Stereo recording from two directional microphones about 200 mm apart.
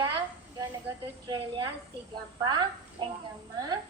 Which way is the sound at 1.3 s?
20° right (ahead or behind).